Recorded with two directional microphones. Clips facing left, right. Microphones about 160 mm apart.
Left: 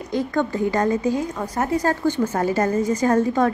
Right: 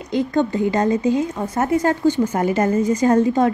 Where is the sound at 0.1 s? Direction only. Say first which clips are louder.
Right 3 dB; 20° right (ahead or behind).